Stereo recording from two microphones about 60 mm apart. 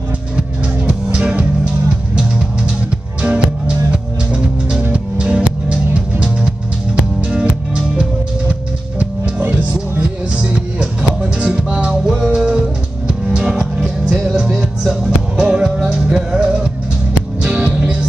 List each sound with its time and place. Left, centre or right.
0.4 s music: centre
9.4 s music: right